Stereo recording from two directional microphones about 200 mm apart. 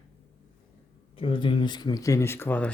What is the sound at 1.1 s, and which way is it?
Speech, 25° left (ahead or behind).